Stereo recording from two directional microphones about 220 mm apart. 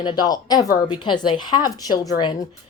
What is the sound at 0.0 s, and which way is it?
A woman's voice, 20° left (ahead or behind).